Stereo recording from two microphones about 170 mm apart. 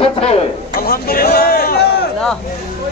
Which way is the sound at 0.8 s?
60° left (ahead or behind).